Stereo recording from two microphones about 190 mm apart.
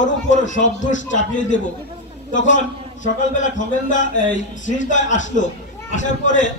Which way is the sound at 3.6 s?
40° left (ahead or behind).